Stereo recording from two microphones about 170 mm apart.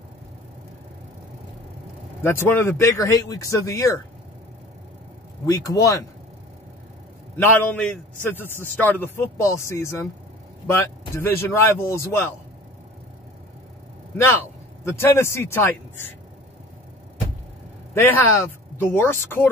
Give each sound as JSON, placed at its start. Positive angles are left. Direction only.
{"t": 2.2, "sound": "speech", "side_deg": 15}
{"t": 5.5, "sound": "speech", "side_deg": 20}
{"t": 7.3, "sound": "speech", "side_deg": 10}
{"t": 14.1, "sound": "speech", "side_deg": 15}
{"t": 18.0, "sound": "speech", "side_deg": 15}